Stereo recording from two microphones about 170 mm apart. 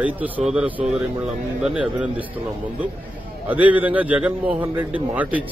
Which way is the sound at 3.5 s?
10° right (ahead or behind).